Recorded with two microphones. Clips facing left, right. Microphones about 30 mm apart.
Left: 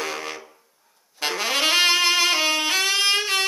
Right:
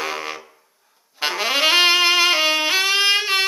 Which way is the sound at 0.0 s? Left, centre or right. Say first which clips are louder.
Right 3 dB; centre.